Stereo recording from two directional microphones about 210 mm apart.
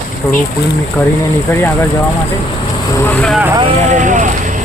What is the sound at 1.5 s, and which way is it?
Speech, 10° left (ahead or behind).